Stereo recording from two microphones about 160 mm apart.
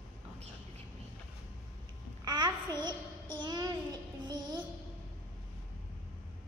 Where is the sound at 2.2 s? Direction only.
25° right (ahead or behind).